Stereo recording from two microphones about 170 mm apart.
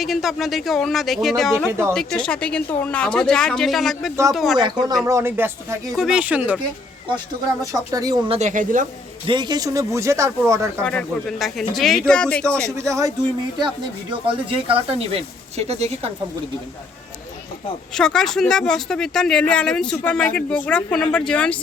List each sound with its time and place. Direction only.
0.0 s speech: centre (ahead or behind)
4.5 s speech: 25° right (ahead or behind)
5.9 s speech: centre (ahead or behind)
7.6 s speech: 20° right (ahead or behind)
8.3 s a woman's voice: 45° right (ahead or behind)
9.2 s speech: 25° right (ahead or behind)
10.8 s speech: 5° left (ahead or behind)
13.6 s speech: 25° right (ahead or behind)
17.9 s speech: 5° left (ahead or behind)